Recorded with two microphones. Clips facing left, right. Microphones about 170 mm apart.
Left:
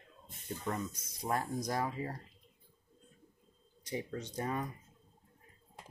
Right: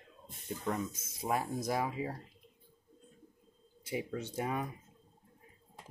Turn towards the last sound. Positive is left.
turn(degrees=-10)  # may be behind; listen again after turning